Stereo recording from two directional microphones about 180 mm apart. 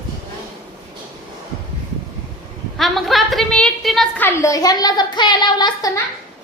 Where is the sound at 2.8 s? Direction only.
Centre (ahead or behind); by 6.0 s 20° left (ahead or behind).